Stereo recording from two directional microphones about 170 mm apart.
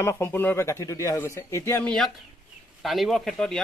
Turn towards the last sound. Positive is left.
turn(degrees=0)  # may be behind; listen again after turning